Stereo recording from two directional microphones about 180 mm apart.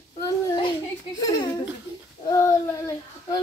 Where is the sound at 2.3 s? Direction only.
20° left (ahead or behind).